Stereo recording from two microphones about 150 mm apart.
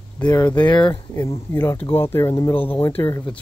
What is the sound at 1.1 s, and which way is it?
Speech, 20° left (ahead or behind).